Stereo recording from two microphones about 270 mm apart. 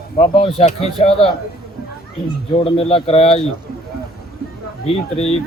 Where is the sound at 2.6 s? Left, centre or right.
Left.